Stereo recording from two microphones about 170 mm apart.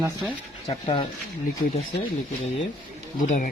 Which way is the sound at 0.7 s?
30° left (ahead or behind).